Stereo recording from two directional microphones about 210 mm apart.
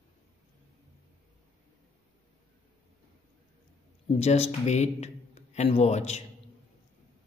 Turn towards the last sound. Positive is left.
turn(degrees=30)  # may be behind; listen again after turning